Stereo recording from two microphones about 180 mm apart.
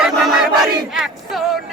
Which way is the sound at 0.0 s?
Centre (ahead or behind).